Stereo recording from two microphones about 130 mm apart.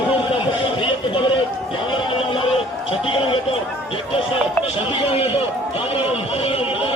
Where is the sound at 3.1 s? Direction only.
45° left (ahead or behind).